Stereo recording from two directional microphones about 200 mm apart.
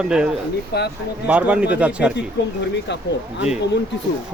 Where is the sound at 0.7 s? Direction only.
55° left (ahead or behind).